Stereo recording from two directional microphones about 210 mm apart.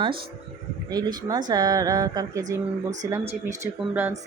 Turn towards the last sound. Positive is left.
turn(degrees=-10)  # may be behind; listen again after turning